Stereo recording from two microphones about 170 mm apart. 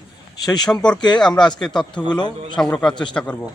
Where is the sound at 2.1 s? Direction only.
25° left (ahead or behind).